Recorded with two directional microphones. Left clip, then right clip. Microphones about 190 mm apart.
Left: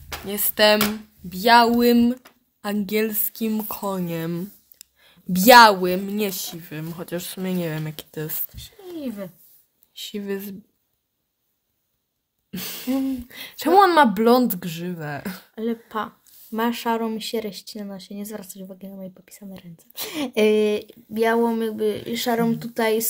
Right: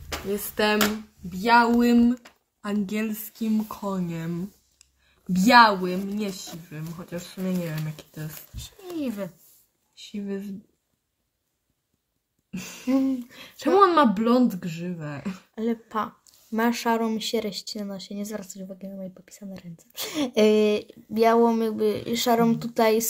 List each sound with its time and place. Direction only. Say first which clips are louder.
0.3 s speech: left 7 dB; 60° left (ahead or behind)
8.5 s speech: right 6 dB; centre (ahead or behind)
9.9 s speech: left 5 dB; 65° left (ahead or behind)
12.4 s a sound: left 5 dB; 50° left (ahead or behind)
13.4 s speech: left 3 dB; 65° left (ahead or behind)
15.5 s speech: left 1 dB; 5° left (ahead or behind)